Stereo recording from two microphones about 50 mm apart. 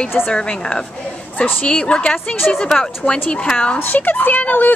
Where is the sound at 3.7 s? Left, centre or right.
Left.